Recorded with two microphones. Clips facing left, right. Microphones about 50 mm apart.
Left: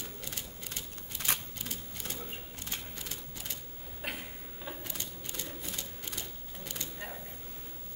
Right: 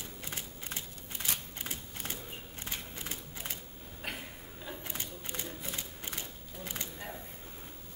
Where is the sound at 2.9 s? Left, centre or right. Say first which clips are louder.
Right 1 dB; right.